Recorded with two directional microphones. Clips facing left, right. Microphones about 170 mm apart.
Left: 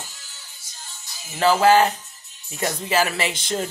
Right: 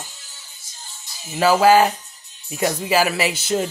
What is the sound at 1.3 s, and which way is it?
Speech, 10° right (ahead or behind).